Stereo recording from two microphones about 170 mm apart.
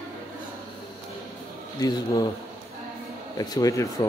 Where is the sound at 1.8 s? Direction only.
20° left (ahead or behind).